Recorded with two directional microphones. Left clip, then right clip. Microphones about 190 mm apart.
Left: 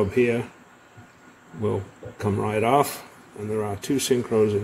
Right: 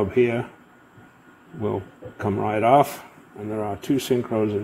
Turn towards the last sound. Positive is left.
turn(degrees=-35)  # may be behind; listen again after turning